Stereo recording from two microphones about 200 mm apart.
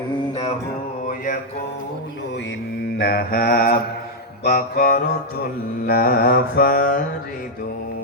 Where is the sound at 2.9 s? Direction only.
50° left (ahead or behind).